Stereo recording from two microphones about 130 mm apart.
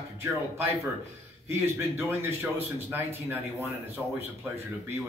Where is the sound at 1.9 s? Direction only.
20° right (ahead or behind).